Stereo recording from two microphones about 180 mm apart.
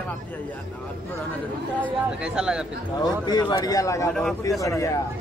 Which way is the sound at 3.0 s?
20° left (ahead or behind).